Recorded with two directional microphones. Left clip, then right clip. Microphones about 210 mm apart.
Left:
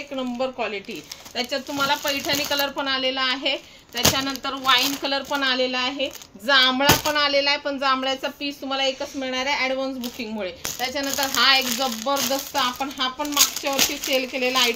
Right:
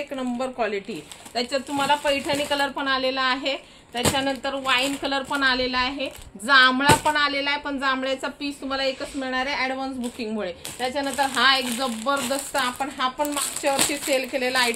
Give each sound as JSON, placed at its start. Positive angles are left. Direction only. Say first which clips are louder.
{"t": 0.1, "sound": "speech", "louder": "left 2 dB", "side_deg": -25}
{"t": 1.3, "sound": "speech", "louder": "right 1 dB", "side_deg": -15}
{"t": 1.8, "sound": "speech", "louder": "right 1 dB", "side_deg": 5}
{"t": 2.9, "sound": "a woman's voice", "louder": "right 1 dB", "side_deg": -10}
{"t": 4.1, "sound": "speech", "louder": "right 1 dB", "side_deg": 5}
{"t": 5.3, "sound": "a woman's voice", "louder": "right 1 dB", "side_deg": -20}
{"t": 10.8, "sound": "speech", "louder": "right 1 dB", "side_deg": 0}
{"t": 11.4, "sound": "a woman's voice", "louder": "left 3 dB", "side_deg": -15}